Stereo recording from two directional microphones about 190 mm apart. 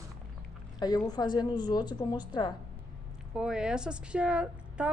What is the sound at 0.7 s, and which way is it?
Speech, 20° left (ahead or behind).